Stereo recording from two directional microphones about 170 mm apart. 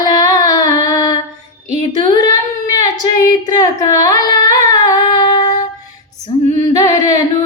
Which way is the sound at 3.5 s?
20° left (ahead or behind).